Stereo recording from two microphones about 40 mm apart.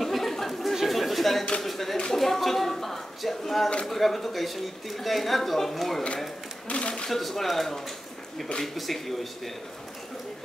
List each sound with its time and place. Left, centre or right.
0.0 s chatter: centre
0.8 s a sound: centre
1.6 s a woman's voice: centre
6.7 s speech: left
7.1 s a woman's voice: centre